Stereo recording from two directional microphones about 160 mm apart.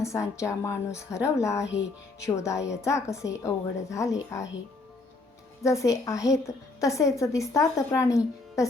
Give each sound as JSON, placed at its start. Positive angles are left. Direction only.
{"t": 0.0, "sound": "a woman's voice", "side_deg": 20}
{"t": 5.6, "sound": "a woman's voice", "side_deg": 20}